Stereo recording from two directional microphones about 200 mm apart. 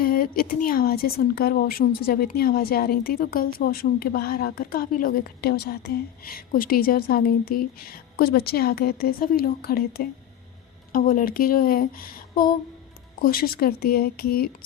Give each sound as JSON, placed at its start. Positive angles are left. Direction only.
{"t": 0.0, "sound": "a woman's voice", "side_deg": 45}